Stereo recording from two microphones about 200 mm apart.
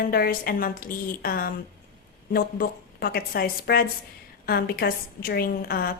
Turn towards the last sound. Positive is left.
turn(degrees=50)  # may be behind; listen again after turning